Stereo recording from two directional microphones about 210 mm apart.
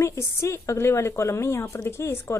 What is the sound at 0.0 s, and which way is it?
A woman's voice, 15° left (ahead or behind).